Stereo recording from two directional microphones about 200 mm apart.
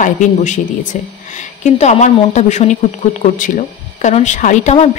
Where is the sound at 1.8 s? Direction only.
35° left (ahead or behind).